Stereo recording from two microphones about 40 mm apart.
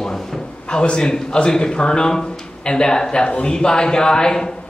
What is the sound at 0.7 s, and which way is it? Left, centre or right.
A man's voice, left.